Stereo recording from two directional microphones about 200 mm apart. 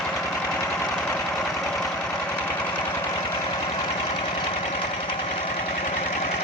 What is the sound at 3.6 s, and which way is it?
Engine, 25° left (ahead or behind).